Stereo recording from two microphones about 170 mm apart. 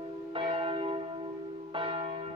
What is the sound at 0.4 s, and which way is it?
Church bell, 30° right (ahead or behind).